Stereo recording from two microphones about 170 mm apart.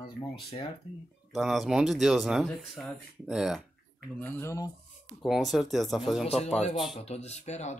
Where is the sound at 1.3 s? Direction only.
Centre (ahead or behind).